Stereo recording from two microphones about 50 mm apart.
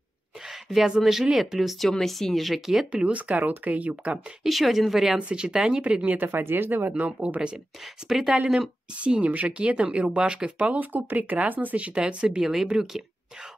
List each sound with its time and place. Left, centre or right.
0.5 s a sound: centre
0.9 s speech: centre
2.9 s speech: right
4.4 s speech: centre
5.1 s speech: centre
6.0 s speech: right
7.8 s speech: centre
8.9 s speech: right
11.9 s speech: right
12.4 s speech: centre